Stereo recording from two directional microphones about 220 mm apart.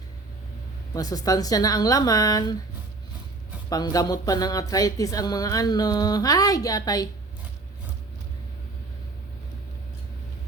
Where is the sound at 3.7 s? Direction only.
15° left (ahead or behind).